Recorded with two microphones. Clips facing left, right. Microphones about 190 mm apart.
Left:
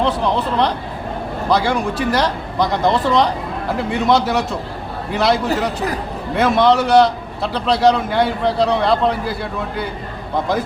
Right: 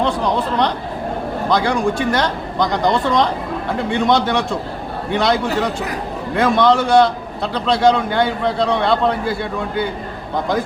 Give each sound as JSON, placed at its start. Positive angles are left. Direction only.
{"t": 1.5, "sound": "a man's voice", "side_deg": 5}